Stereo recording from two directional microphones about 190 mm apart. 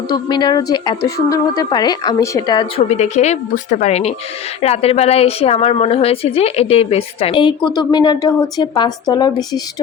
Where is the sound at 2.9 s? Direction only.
35° left (ahead or behind).